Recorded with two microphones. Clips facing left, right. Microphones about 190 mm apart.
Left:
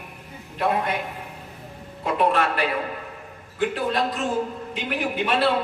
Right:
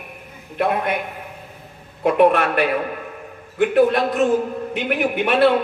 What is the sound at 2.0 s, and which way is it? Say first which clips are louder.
A man's voice: right 6 dB; 60° right (ahead or behind).